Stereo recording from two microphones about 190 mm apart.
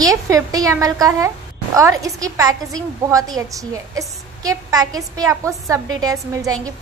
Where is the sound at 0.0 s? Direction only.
20° right (ahead or behind).